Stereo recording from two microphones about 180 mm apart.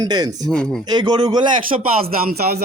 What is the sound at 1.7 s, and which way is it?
Speech, 35° right (ahead or behind).